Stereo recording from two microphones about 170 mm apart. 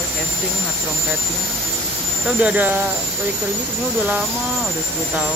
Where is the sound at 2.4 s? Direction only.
10° right (ahead or behind).